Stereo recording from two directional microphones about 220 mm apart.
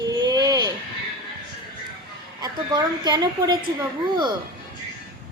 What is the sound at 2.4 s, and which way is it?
A child's voice, 20° right (ahead or behind).